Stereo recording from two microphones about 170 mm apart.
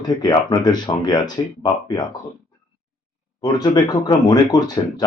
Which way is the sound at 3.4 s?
25° left (ahead or behind).